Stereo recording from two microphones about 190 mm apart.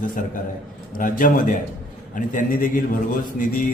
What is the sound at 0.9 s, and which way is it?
A man's voice, 45° left (ahead or behind).